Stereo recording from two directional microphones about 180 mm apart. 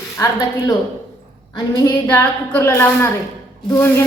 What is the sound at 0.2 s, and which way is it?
A woman's voice, 20° left (ahead or behind).